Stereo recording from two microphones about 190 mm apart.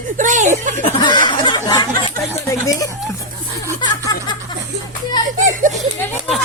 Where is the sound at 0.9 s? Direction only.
25° left (ahead or behind).